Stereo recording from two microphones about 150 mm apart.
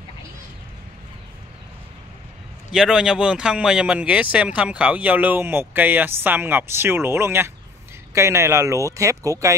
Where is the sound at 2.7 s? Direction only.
5° right (ahead or behind).